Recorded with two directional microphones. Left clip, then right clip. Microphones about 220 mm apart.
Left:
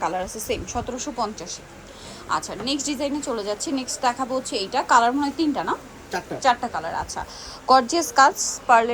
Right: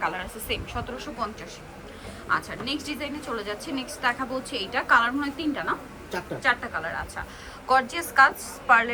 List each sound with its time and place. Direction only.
0.0 s a woman's voice: 20° left (ahead or behind)
2.3 s a woman's voice: 15° left (ahead or behind)